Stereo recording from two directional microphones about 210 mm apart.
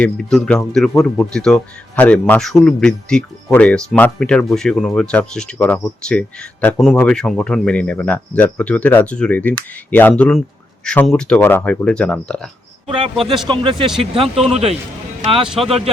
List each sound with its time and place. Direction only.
0.0 s speech: 5° left (ahead or behind)
13.1 s speech: 25° right (ahead or behind)
15.4 s speech: centre (ahead or behind)